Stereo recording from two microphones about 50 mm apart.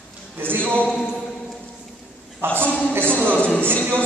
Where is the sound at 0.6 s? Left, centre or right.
Left.